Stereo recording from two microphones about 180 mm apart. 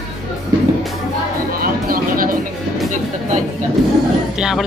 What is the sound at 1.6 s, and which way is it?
Music, 55° right (ahead or behind).